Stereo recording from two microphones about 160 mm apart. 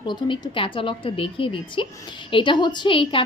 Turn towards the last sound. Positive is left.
turn(degrees=35)  # may be behind; listen again after turning